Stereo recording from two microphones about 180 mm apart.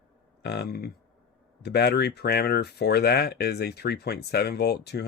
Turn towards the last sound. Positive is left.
turn(degrees=65)  # may be behind; listen again after turning